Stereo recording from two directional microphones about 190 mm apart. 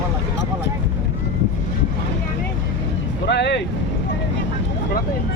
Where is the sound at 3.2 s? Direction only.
65° left (ahead or behind).